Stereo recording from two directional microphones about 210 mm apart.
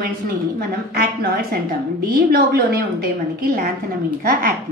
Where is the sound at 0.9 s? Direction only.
45° right (ahead or behind).